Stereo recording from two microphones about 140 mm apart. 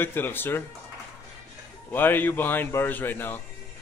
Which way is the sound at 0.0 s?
15° left (ahead or behind).